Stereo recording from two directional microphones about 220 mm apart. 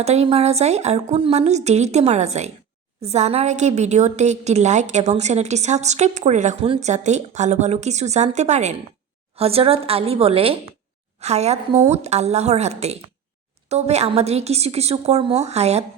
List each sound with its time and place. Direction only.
0.0 s a woman's voice: 30° right (ahead or behind)